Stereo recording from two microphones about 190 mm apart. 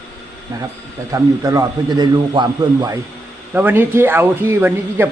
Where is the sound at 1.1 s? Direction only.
20° right (ahead or behind).